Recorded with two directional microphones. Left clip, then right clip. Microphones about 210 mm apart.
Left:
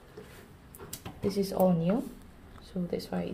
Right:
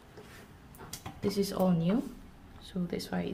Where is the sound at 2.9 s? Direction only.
10° right (ahead or behind).